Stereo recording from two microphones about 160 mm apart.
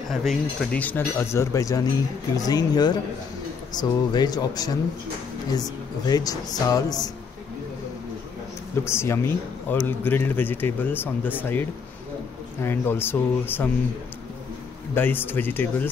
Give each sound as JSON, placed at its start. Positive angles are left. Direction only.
{"t": 0.1, "sound": "speech", "side_deg": 0}
{"t": 0.7, "sound": "speech", "side_deg": 10}
{"t": 8.8, "sound": "speech", "side_deg": 15}
{"t": 12.6, "sound": "speech", "side_deg": 15}
{"t": 15.0, "sound": "speech", "side_deg": 15}